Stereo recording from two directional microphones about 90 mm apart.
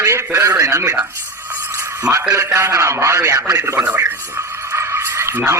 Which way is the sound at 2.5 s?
30° right (ahead or behind).